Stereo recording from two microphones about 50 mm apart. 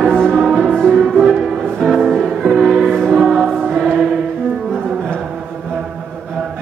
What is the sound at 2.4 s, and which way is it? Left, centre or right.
Music, centre.